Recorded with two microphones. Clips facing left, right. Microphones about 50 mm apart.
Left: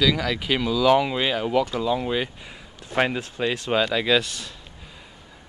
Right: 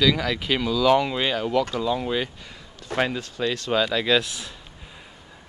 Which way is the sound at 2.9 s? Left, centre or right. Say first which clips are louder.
Left 2 dB; centre.